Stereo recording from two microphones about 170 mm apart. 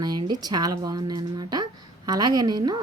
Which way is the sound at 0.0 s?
25° right (ahead or behind).